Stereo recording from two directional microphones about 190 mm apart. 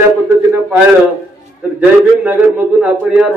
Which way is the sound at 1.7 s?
5° right (ahead or behind).